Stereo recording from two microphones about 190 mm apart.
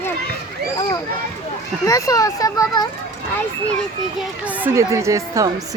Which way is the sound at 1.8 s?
15° left (ahead or behind).